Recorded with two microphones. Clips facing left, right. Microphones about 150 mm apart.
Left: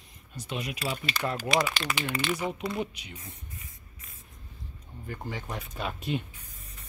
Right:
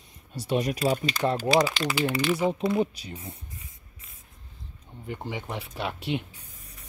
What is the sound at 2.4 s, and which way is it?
Speech, 30° right (ahead or behind).